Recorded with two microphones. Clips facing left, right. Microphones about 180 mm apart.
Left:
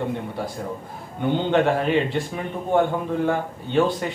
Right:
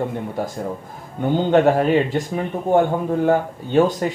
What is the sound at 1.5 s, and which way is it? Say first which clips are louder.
Speech: right 6 dB; 40° right (ahead or behind).